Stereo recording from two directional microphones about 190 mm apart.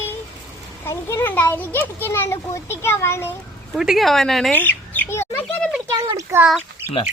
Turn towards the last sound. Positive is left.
turn(degrees=-5)  # may be behind; listen again after turning